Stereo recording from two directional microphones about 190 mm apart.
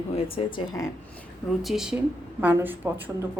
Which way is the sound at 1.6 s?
Centre (ahead or behind).